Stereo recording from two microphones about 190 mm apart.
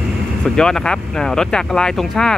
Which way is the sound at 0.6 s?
5° left (ahead or behind).